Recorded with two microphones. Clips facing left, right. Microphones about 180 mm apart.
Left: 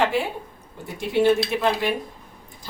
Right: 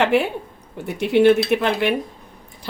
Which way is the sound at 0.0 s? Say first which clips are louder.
Right 5 dB; 70° right (ahead or behind).